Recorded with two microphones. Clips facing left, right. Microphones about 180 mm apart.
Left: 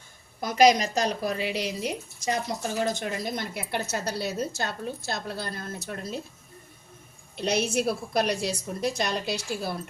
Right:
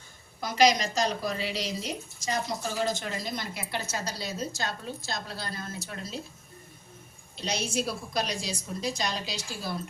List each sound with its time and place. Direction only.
0.4 s a woman's voice: 50° left (ahead or behind)
7.3 s a woman's voice: 60° left (ahead or behind)